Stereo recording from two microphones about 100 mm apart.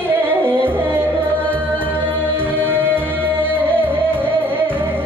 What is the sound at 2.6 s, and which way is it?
Music, 20° right (ahead or behind).